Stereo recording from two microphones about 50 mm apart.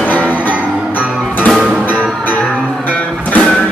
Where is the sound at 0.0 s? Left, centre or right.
Left.